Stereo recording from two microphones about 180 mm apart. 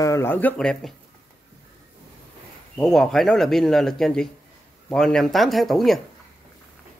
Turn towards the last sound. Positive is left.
turn(degrees=0)  # may be behind; listen again after turning